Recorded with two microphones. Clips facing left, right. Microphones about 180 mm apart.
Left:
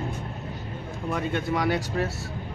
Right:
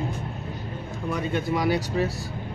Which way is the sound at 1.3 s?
5° right (ahead or behind).